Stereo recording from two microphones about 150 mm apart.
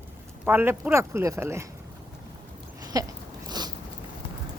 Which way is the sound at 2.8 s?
25° right (ahead or behind).